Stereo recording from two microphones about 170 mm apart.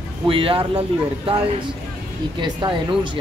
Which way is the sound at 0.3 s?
30° right (ahead or behind).